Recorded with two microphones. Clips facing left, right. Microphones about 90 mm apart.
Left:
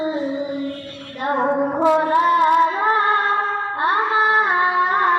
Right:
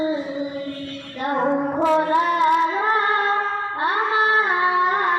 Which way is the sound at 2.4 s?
20° left (ahead or behind).